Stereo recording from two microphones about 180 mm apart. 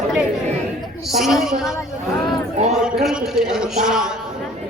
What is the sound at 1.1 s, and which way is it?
Speech, centre (ahead or behind).